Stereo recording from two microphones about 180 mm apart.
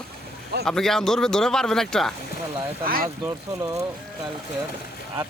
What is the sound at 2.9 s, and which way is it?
Speech, 55° right (ahead or behind).